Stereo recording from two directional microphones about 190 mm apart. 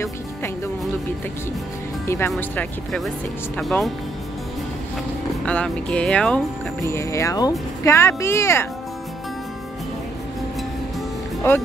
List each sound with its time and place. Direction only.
2.0 s speech: 15° left (ahead or behind)
2.3 s speech: centre (ahead or behind)
5.4 s speech: 5° left (ahead or behind)